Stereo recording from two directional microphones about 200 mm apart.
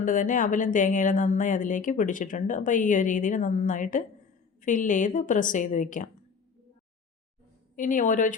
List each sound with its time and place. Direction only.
0.0 s speech: 40° left (ahead or behind)
7.8 s speech: 40° left (ahead or behind)